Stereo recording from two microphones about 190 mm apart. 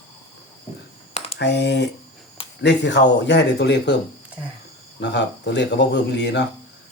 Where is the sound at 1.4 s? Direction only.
65° left (ahead or behind).